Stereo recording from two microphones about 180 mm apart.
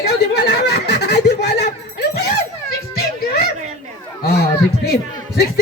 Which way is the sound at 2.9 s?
60° left (ahead or behind).